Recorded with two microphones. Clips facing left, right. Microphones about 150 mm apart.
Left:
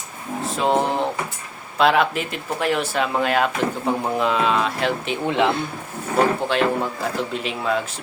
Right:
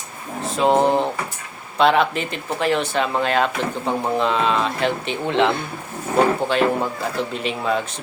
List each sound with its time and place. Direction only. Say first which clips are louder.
0.4 s speech: right 4 dB; centre (ahead or behind)